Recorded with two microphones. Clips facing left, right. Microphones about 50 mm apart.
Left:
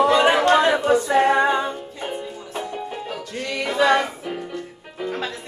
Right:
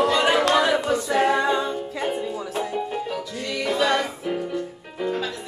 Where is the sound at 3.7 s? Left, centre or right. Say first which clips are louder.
Left 5 dB; left.